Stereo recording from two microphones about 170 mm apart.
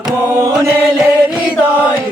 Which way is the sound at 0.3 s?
15° right (ahead or behind).